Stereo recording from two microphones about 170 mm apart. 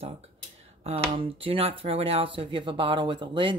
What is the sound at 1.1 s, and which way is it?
Speech, 35° right (ahead or behind).